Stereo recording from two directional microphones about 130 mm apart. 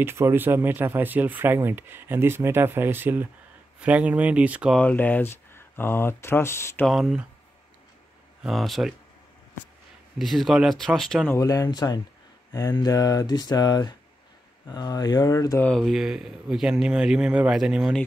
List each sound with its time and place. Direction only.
0.0 s speech: 20° right (ahead or behind)
4.7 s speech: 10° left (ahead or behind)
6.9 s speech: 5° right (ahead or behind)
8.4 s speech: centre (ahead or behind)
10.1 s speech: centre (ahead or behind)
11.2 s speech: 25° left (ahead or behind)
12.5 s a sound: 30° left (ahead or behind)
14.7 s speech: 30° left (ahead or behind)
15.6 s speech: centre (ahead or behind)